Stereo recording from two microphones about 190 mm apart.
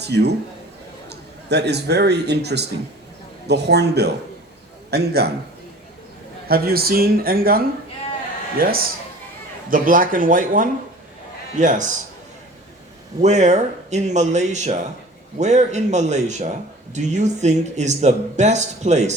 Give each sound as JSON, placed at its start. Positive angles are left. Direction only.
{"t": 0.0, "sound": "a man's voice", "side_deg": -60}
{"t": 6.5, "sound": "a man's voice", "side_deg": -55}
{"t": 13.2, "sound": "a man's voice", "side_deg": -35}